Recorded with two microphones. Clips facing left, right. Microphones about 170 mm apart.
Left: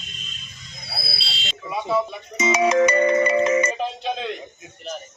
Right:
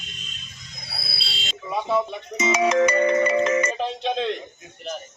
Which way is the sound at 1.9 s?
10° left (ahead or behind).